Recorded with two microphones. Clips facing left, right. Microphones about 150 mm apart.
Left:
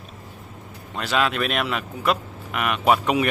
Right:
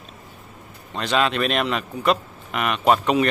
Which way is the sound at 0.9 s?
5° left (ahead or behind).